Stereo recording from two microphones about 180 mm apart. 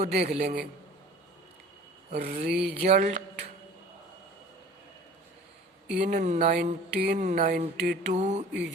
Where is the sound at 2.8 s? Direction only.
40° right (ahead or behind).